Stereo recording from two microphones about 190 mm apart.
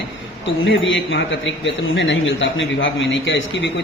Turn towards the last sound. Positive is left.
turn(degrees=75)  # may be behind; listen again after turning